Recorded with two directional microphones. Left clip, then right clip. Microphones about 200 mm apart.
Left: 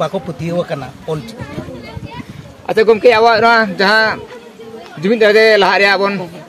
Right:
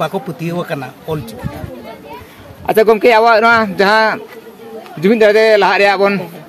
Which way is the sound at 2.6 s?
55° right (ahead or behind).